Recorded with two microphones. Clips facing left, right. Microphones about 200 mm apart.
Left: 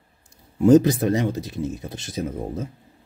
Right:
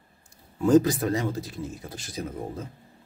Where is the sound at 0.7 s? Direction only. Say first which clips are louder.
Left 5 dB; 25° left (ahead or behind).